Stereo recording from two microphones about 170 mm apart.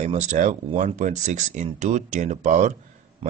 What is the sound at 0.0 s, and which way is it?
Speech, 45° right (ahead or behind).